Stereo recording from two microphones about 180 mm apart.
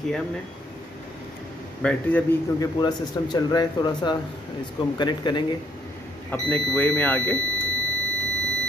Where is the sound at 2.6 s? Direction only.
25° left (ahead or behind).